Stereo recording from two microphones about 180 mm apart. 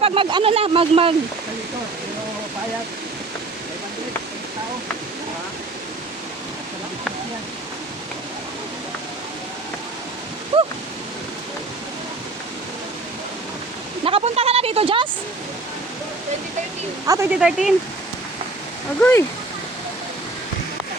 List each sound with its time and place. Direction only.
0.0 s speech: 30° right (ahead or behind)
10.5 s waves: 30° right (ahead or behind)
14.0 s a sound: 30° right (ahead or behind)
17.1 s speech: 15° right (ahead or behind)
17.4 s speech: centre (ahead or behind)